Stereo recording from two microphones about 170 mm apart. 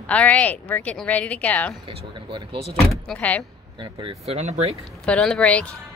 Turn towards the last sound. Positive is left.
turn(degrees=5)  # may be behind; listen again after turning